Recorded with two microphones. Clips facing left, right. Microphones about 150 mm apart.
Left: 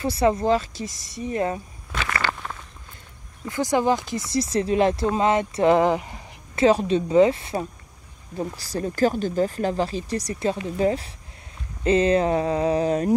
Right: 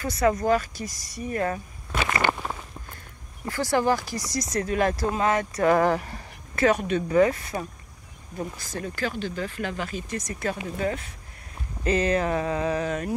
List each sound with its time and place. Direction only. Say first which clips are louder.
0.0 s speech: left 2 dB; 30° left (ahead or behind)
2.0 s walk: right 2 dB; 20° right (ahead or behind)
3.4 s speech: left 2 dB; 20° left (ahead or behind)